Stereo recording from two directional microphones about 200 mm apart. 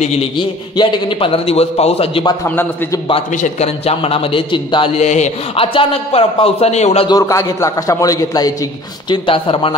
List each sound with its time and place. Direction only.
0.0 s a man's voice: 25° left (ahead or behind)
2.4 s a man's voice: 10° left (ahead or behind)
3.1 s a man's voice: 30° left (ahead or behind)
7.1 s a man's voice: 15° left (ahead or behind)